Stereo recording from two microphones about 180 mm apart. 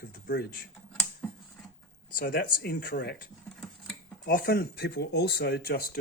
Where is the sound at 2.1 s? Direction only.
60° left (ahead or behind).